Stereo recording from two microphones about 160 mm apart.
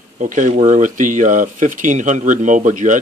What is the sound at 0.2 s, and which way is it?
Speech, 50° right (ahead or behind).